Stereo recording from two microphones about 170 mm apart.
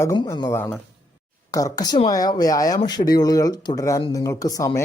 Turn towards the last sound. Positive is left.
turn(degrees=20)  # may be behind; listen again after turning